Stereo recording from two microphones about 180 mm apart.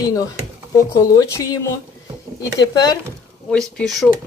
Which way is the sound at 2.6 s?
20° left (ahead or behind).